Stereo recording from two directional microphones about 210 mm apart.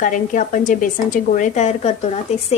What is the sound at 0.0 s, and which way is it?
Speech, 40° left (ahead or behind).